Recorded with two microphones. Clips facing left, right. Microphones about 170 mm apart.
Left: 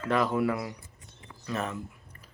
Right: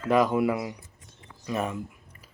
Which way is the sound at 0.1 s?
10° right (ahead or behind).